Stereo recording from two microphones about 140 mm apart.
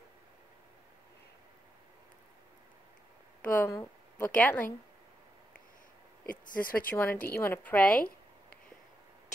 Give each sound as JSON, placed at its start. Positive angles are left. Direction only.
{"t": 3.4, "sound": "a woman's voice", "side_deg": 10}
{"t": 6.5, "sound": "speech", "side_deg": 85}
{"t": 7.0, "sound": "a woman's voice", "side_deg": 15}